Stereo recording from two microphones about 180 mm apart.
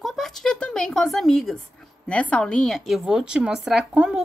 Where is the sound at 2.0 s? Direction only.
5° left (ahead or behind).